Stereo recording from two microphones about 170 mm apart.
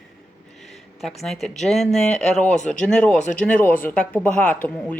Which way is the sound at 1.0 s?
Centre (ahead or behind).